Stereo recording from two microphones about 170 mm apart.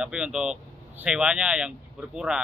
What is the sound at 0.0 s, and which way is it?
Speech, 5° right (ahead or behind).